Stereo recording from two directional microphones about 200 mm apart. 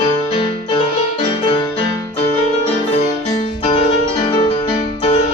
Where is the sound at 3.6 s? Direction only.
30° left (ahead or behind).